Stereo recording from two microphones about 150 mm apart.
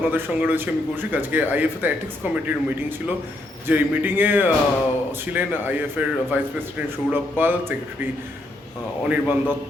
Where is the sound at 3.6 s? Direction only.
10° right (ahead or behind).